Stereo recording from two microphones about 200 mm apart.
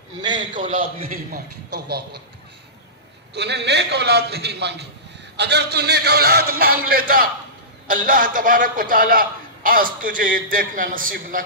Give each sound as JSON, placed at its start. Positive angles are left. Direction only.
{"t": 0.2, "sound": "a man's voice", "side_deg": -20}
{"t": 1.0, "sound": "a man's voice", "side_deg": -45}
{"t": 3.3, "sound": "a man's voice", "side_deg": -55}